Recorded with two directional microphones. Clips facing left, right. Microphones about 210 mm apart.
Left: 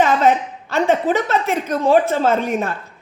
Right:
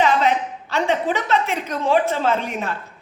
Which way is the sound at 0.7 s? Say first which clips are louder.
Left 4 dB; 45° left (ahead or behind).